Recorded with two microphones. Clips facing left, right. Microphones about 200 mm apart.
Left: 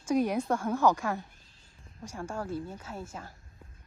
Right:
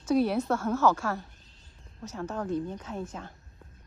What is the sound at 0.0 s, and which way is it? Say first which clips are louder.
A woman's voice: right 2 dB; 10° left (ahead or behind).